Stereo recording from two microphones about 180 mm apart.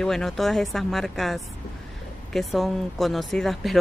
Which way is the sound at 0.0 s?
Centre (ahead or behind).